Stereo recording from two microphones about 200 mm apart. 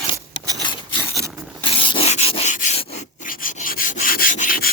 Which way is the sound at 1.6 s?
25° left (ahead or behind).